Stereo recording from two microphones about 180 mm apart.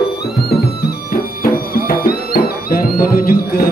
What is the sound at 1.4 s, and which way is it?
Music, 55° left (ahead or behind).